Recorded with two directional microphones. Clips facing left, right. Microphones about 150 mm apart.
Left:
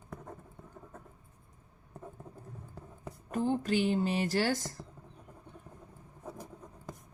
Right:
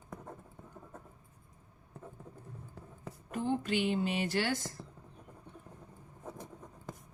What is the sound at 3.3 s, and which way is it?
Speech, 40° left (ahead or behind).